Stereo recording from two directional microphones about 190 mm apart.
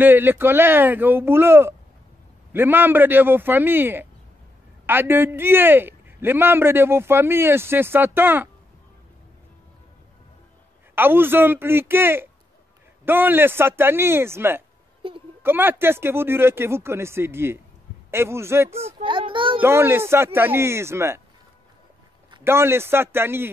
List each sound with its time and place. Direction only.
0.0 s a man's voice: 10° right (ahead or behind)
11.0 s a man's voice: 10° right (ahead or behind)
15.0 s a woman's voice: 30° right (ahead or behind)
15.4 s a man's voice: 10° right (ahead or behind)
18.9 s a child's voice: 25° right (ahead or behind)
19.6 s a man's voice: 10° right (ahead or behind)
22.4 s a man's voice: 15° right (ahead or behind)